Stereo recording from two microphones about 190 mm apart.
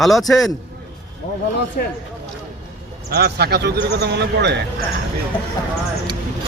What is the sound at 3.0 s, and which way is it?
Speech, 55° right (ahead or behind).